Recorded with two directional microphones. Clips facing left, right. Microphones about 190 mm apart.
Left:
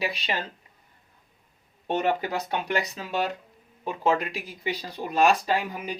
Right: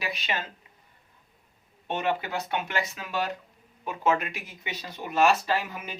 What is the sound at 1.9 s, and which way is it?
Speech, 40° left (ahead or behind).